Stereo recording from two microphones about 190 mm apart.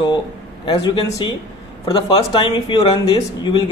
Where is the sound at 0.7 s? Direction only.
25° left (ahead or behind).